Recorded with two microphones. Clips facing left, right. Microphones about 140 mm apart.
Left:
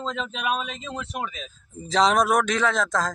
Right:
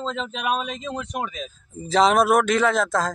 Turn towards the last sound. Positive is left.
turn(degrees=-5)  # may be behind; listen again after turning